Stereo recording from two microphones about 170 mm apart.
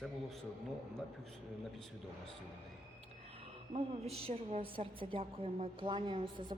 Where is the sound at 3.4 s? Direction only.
35° right (ahead or behind).